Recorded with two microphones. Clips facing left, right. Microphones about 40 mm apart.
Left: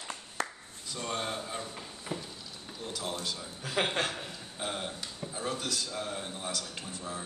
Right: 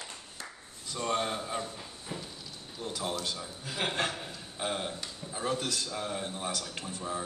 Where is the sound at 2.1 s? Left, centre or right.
Left.